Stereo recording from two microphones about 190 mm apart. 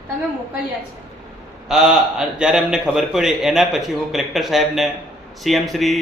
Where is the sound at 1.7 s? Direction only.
5° right (ahead or behind).